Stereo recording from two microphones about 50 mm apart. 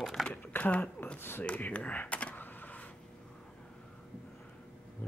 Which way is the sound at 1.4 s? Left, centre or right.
Left.